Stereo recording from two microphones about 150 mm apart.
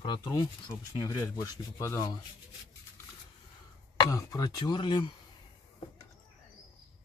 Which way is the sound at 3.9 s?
20° left (ahead or behind).